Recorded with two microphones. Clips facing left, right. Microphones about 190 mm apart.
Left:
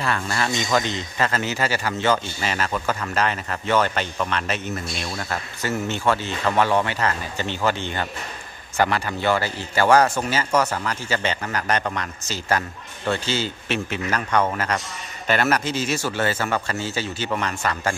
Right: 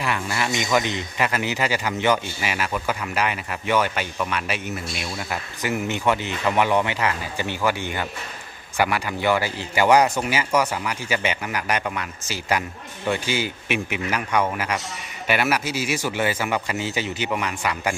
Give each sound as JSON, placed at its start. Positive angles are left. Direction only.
{"t": 0.0, "sound": "a man's voice", "side_deg": -15}